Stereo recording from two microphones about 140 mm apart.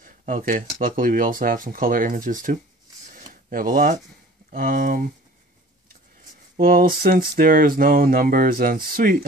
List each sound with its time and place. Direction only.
0.0 s speech: 75° right (ahead or behind)
4.6 s speech: 85° right
6.5 s speech: 90° right